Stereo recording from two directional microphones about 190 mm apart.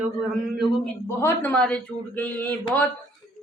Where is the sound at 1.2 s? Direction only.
10° left (ahead or behind).